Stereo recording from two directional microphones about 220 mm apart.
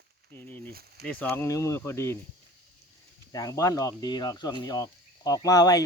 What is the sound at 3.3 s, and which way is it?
Speech, 15° left (ahead or behind).